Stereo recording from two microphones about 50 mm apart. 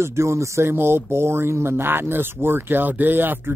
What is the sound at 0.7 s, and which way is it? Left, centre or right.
Speech, right.